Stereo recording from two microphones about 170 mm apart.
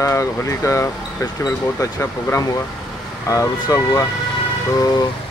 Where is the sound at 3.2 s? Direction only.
20° left (ahead or behind).